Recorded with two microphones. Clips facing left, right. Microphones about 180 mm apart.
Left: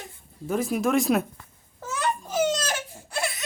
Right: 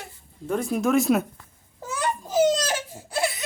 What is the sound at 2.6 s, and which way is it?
Baby cry, 10° right (ahead or behind).